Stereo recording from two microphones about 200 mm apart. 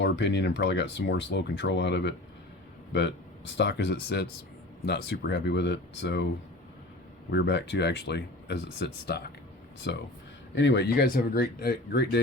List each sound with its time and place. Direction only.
0.0 s speech: 60° left (ahead or behind)
7.3 s speech: 60° left (ahead or behind)